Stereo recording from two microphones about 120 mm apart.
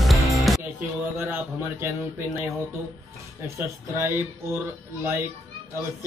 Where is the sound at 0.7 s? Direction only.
20° right (ahead or behind).